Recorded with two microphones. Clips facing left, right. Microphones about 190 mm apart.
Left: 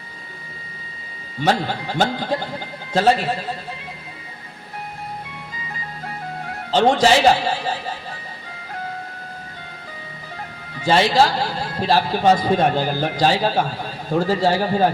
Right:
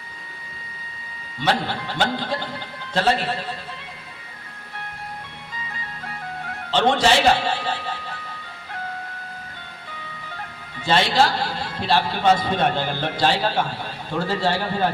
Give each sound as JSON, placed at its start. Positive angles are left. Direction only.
{"t": 1.4, "sound": "speech", "side_deg": 45}
{"t": 6.7, "sound": "speech", "side_deg": 40}
{"t": 10.8, "sound": "a man's voice", "side_deg": 40}